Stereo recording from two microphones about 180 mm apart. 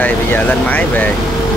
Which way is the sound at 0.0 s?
10° left (ahead or behind).